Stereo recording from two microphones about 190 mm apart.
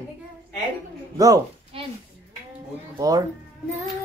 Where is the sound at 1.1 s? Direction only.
20° right (ahead or behind).